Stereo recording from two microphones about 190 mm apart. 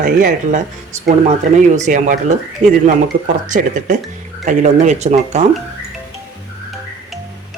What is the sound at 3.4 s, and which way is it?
A man's voice, 45° right (ahead or behind).